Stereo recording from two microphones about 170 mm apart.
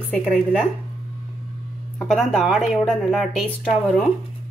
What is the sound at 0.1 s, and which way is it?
Speech, 5° left (ahead or behind).